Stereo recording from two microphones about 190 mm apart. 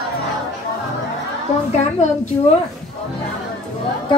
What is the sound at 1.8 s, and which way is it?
Speech, 35° left (ahead or behind).